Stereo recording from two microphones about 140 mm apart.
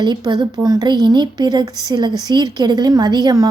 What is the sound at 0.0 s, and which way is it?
A woman's voice, 30° right (ahead or behind).